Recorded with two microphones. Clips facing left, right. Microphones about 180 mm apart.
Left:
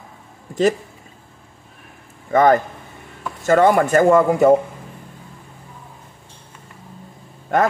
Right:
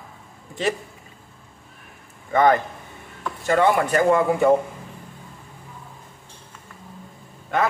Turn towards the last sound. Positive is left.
turn(degrees=45)  # may be behind; listen again after turning